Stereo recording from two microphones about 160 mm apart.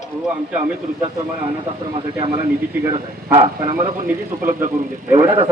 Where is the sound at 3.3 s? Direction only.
35° right (ahead or behind).